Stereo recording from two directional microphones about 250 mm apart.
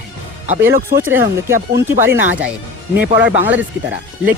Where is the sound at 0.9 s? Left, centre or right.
Right.